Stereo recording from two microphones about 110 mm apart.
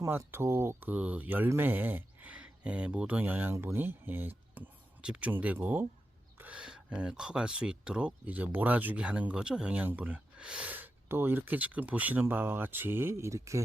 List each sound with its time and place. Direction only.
0.0 s speech: 25° right (ahead or behind)